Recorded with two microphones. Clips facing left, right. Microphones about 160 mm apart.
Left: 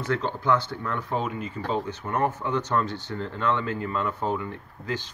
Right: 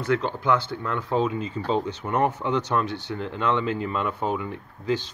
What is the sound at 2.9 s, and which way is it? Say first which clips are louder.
Speech: right 2 dB; 65° right (ahead or behind).